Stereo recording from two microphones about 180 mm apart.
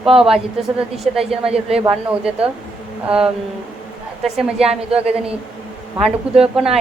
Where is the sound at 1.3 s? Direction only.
35° right (ahead or behind).